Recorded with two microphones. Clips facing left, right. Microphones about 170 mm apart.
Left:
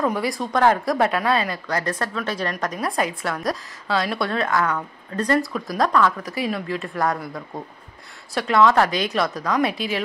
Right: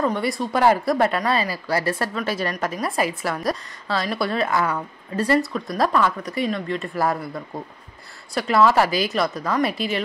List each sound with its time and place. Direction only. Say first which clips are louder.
0.0 s speech: even; centre (ahead or behind)